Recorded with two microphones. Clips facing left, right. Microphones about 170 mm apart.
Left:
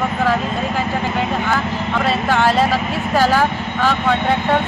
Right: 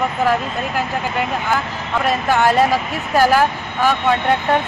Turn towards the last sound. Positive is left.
turn(degrees=-10)  # may be behind; listen again after turning